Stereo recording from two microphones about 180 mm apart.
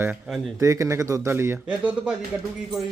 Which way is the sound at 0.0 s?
5° right (ahead or behind).